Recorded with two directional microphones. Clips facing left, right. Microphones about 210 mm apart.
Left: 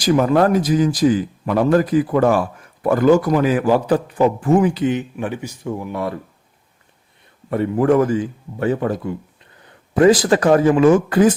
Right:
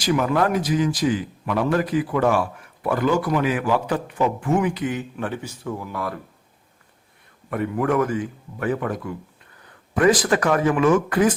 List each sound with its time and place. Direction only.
0.0 s speech: 35° left (ahead or behind)
5.1 s speech: 15° left (ahead or behind)
7.5 s speech: 30° left (ahead or behind)